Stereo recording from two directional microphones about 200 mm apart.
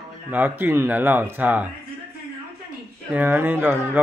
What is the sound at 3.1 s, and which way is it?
Speech, 10° right (ahead or behind).